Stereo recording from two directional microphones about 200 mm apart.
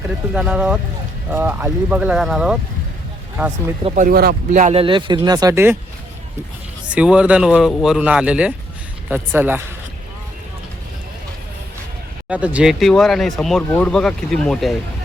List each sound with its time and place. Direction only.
0.3 s speech: 5° right (ahead or behind)
3.9 s speech: 45° right (ahead or behind)
4.5 s speech: 35° right (ahead or behind); by 5.7 s 15° right (ahead or behind)
6.8 s speech: 5° right (ahead or behind)
12.3 s speech: 5° right (ahead or behind)